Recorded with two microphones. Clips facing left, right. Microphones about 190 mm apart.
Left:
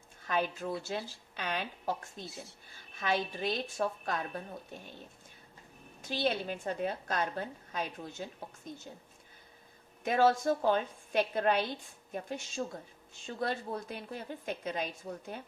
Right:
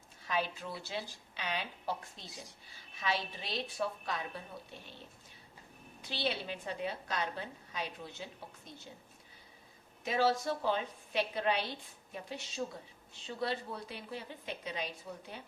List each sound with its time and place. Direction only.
0.3 s a woman's voice: 50° left (ahead or behind)
6.0 s a woman's voice: 45° left (ahead or behind)
10.0 s a woman's voice: 50° left (ahead or behind)